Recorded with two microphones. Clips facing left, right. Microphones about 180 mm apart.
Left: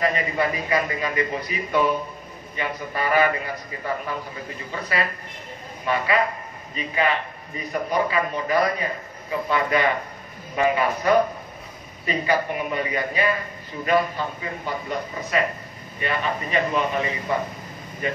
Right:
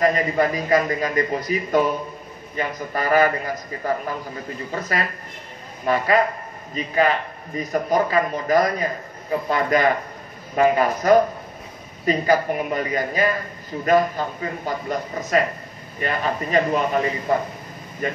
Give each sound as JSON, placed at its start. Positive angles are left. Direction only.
{"t": 0.0, "sound": "a man's voice", "side_deg": -40}